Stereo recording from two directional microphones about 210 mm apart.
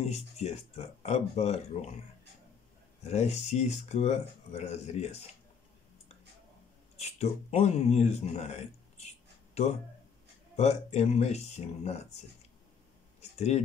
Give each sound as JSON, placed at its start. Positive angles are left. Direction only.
{"t": 0.0, "sound": "speech", "side_deg": 30}
{"t": 3.0, "sound": "speech", "side_deg": 30}
{"t": 7.0, "sound": "speech", "side_deg": 30}